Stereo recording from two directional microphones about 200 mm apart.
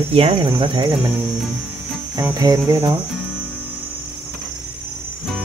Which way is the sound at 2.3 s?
15° right (ahead or behind).